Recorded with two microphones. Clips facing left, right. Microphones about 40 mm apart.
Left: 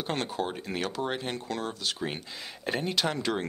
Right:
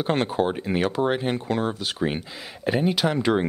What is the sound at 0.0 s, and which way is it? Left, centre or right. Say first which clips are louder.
Speech: right 8 dB; right.